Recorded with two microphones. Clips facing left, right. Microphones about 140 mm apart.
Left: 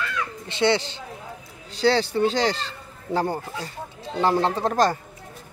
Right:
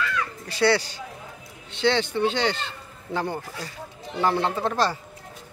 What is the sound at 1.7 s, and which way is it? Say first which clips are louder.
Speech: left 2 dB; 35° left (ahead or behind).